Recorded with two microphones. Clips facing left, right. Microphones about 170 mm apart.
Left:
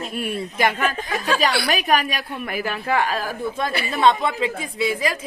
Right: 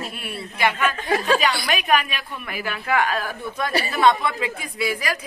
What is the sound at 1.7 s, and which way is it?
Speech, 35° left (ahead or behind).